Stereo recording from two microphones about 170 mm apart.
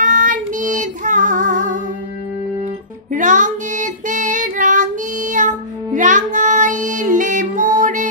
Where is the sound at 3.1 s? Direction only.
50° right (ahead or behind).